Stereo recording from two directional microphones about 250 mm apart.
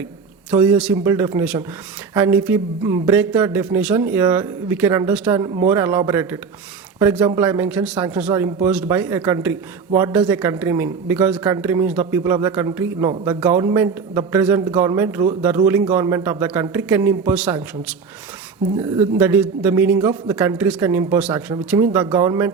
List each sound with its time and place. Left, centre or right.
0.5 s speech: centre
18.9 s speech: centre